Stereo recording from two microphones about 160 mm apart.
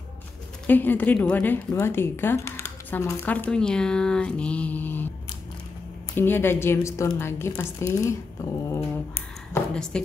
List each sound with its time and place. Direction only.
0.7 s a woman's voice: 10° left (ahead or behind)
6.1 s a woman's voice: 15° left (ahead or behind)
8.7 s a sound: 15° left (ahead or behind)
9.9 s a woman's voice: 5° left (ahead or behind)